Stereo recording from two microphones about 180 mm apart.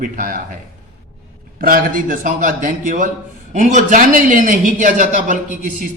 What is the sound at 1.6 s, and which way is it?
A man's voice, 50° right (ahead or behind).